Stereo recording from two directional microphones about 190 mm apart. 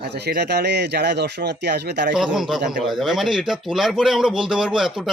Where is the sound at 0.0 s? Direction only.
60° right (ahead or behind).